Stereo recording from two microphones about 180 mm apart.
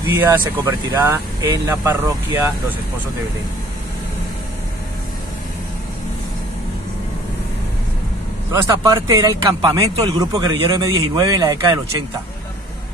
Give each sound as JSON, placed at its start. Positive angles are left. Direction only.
{"t": 0.1, "sound": "speech", "side_deg": -15}
{"t": 8.5, "sound": "speech", "side_deg": -20}